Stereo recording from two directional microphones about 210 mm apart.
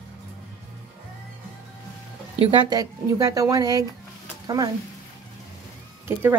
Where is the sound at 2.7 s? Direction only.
15° right (ahead or behind).